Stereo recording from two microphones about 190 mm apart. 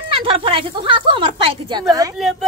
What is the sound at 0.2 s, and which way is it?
Speech, 30° right (ahead or behind).